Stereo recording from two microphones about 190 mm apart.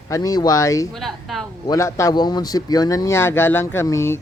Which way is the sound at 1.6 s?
15° left (ahead or behind).